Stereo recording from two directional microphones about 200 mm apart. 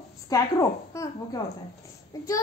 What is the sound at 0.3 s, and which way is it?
A child's voice, 15° left (ahead or behind).